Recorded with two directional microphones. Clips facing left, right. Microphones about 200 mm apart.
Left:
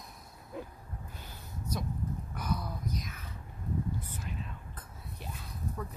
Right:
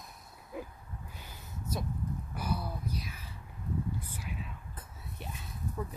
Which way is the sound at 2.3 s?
5° right (ahead or behind).